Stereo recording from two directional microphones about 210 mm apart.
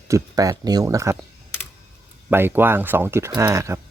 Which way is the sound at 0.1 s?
15° right (ahead or behind).